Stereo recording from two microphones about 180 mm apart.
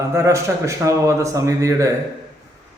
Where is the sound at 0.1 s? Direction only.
15° right (ahead or behind).